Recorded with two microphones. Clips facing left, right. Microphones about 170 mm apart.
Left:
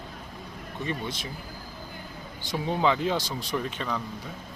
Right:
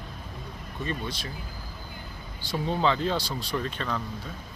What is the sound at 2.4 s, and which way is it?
Speech, 15° left (ahead or behind).